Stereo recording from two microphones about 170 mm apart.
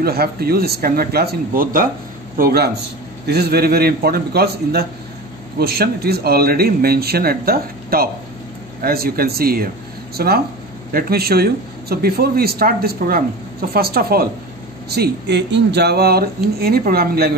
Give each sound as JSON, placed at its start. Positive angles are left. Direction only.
{"t": 0.0, "sound": "a man's voice", "side_deg": -65}
{"t": 14.9, "sound": "a man's voice", "side_deg": -80}